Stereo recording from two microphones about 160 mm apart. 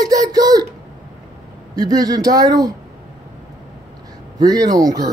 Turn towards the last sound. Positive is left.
turn(degrees=-25)  # may be behind; listen again after turning